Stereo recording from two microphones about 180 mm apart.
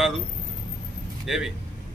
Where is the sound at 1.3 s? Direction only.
5° right (ahead or behind).